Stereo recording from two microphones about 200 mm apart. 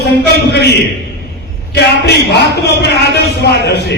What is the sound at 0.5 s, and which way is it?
Speech, 55° left (ahead or behind).